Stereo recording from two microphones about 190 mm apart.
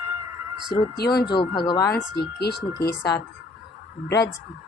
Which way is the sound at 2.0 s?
60° left (ahead or behind).